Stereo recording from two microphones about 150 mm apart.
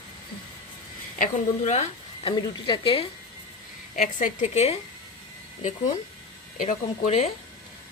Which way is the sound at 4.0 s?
60° left (ahead or behind).